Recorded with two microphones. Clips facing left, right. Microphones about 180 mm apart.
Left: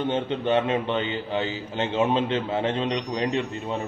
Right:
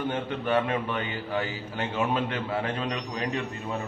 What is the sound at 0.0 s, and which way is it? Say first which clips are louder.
A man's voice: left 4 dB; 25° left (ahead or behind).